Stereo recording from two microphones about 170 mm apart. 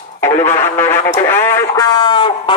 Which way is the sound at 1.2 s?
15° left (ahead or behind).